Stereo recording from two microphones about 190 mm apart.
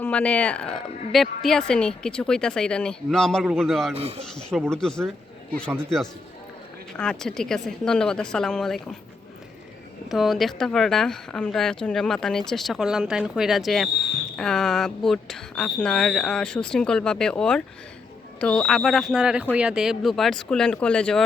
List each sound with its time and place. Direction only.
0.0 s a woman's voice: 5° left (ahead or behind)
3.9 s speech: 30° right (ahead or behind)
4.4 s a woman's voice: 5° left (ahead or behind)
6.9 s a woman's voice: 5° left (ahead or behind)
10.1 s a woman's voice: centre (ahead or behind)